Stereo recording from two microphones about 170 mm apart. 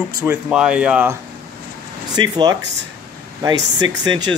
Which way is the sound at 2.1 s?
25° right (ahead or behind).